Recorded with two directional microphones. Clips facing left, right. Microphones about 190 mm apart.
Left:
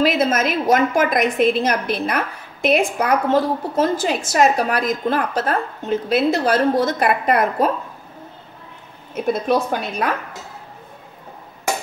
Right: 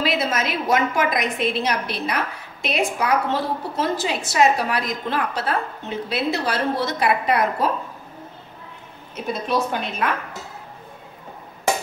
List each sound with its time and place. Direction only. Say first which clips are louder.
0.0 s a woman's voice: left 5 dB; 50° left (ahead or behind)
9.1 s a woman's voice: left 5 dB; 50° left (ahead or behind)